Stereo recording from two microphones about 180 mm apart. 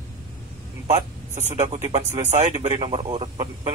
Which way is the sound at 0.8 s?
40° right (ahead or behind).